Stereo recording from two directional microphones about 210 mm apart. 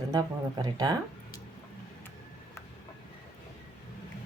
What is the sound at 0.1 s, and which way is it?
Speech, 20° right (ahead or behind).